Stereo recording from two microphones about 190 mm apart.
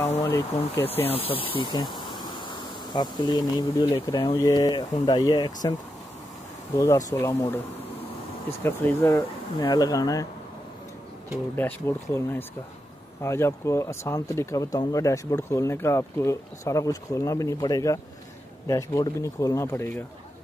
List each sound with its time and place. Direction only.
0.0 s speech: 10° left (ahead or behind)
1.3 s speech: 30° left (ahead or behind)
6.8 s speech: 15° left (ahead or behind)
11.5 s speech: 10° left (ahead or behind)